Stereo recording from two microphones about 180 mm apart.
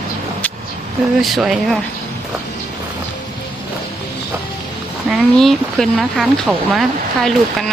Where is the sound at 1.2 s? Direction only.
Centre (ahead or behind).